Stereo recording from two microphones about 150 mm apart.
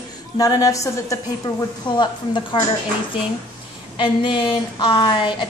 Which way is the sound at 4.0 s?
30° left (ahead or behind).